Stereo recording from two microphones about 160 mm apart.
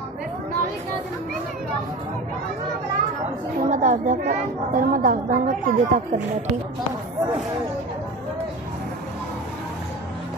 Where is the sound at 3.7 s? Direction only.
55° right (ahead or behind).